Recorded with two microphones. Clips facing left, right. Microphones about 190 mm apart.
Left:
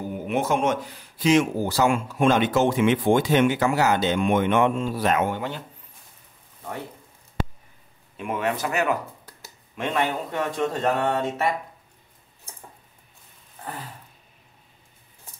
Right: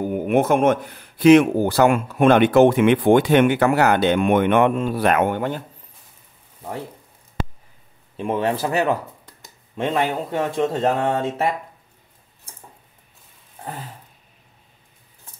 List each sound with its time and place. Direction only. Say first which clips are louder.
0.0 s speech: right 7 dB; 55° right (ahead or behind)
8.2 s speech: right 5 dB; 30° right (ahead or behind)